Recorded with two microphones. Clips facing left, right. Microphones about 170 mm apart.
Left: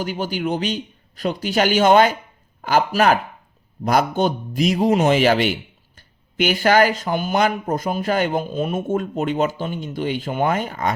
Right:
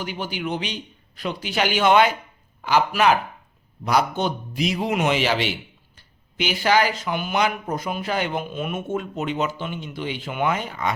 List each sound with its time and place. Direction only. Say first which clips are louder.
0.0 s speech: left 5 dB; 45° left (ahead or behind)
8.9 s speech: left 5 dB; 45° left (ahead or behind)